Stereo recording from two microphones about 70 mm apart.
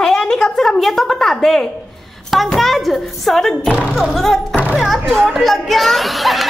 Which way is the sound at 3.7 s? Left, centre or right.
Centre.